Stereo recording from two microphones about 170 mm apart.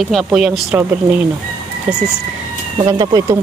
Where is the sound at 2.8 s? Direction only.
25° right (ahead or behind).